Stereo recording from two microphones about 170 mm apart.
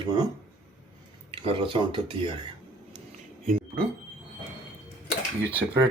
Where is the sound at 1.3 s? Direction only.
30° right (ahead or behind).